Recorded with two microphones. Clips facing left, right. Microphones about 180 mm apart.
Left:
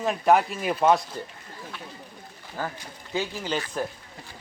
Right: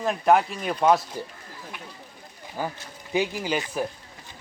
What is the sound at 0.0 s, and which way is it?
Speech, centre (ahead or behind).